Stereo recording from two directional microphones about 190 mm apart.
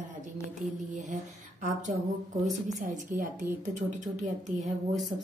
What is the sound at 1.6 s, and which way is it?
A woman's voice, 40° right (ahead or behind).